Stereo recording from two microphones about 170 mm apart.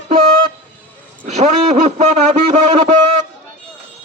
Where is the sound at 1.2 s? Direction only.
45° right (ahead or behind).